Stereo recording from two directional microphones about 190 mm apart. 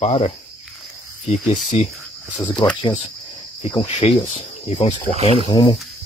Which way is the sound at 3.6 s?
25° left (ahead or behind).